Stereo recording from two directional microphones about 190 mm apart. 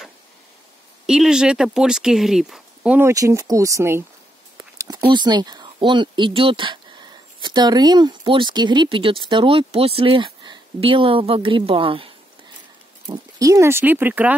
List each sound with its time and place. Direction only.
1.0 s speech: 5° right (ahead or behind); by 12.1 s 30° right (ahead or behind)
13.1 s speech: 15° right (ahead or behind)